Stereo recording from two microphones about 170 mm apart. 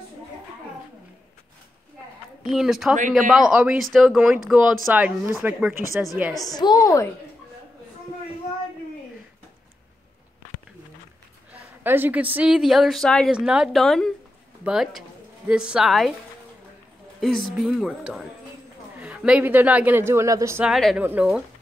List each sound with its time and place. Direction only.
2.4 s speech: centre (ahead or behind)
6.5 s a woman's voice: 25° left (ahead or behind)
11.8 s a woman's voice: 10° right (ahead or behind)
17.2 s speech: centre (ahead or behind); by 20.6 s 15° right (ahead or behind)
20.6 s speech: centre (ahead or behind)